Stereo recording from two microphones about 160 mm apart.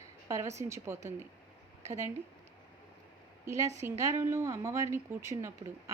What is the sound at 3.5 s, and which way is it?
A woman's voice, 20° right (ahead or behind).